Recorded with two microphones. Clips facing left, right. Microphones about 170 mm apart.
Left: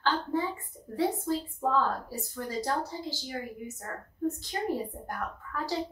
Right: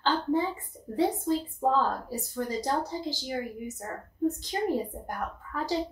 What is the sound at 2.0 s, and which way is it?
A woman's voice, 20° right (ahead or behind).